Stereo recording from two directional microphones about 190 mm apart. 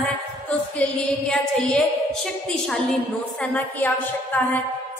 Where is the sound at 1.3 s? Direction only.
5° left (ahead or behind).